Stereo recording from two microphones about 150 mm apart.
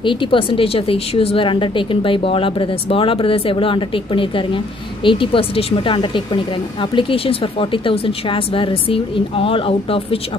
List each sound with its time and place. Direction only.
0.0 s speech: 35° left (ahead or behind)